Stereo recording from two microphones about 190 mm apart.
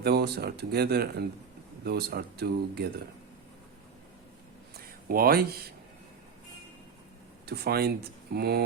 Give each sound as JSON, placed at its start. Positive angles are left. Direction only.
{"t": 0.0, "sound": "speech", "side_deg": -60}
{"t": 5.0, "sound": "speech", "side_deg": -50}
{"t": 7.4, "sound": "speech", "side_deg": -55}